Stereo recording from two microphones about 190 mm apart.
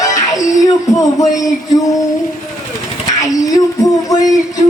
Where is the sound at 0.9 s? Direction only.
20° left (ahead or behind).